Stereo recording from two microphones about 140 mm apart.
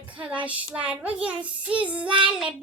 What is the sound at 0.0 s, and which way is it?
Female singing, 35° right (ahead or behind).